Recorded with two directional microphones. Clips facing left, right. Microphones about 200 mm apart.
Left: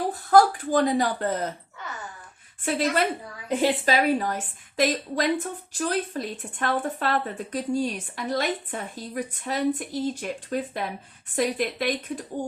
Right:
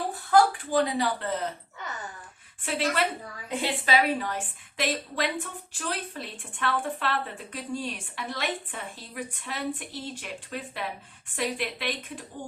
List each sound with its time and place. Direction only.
0.1 s speech: 40° left (ahead or behind)
2.6 s a woman's voice: 40° left (ahead or behind)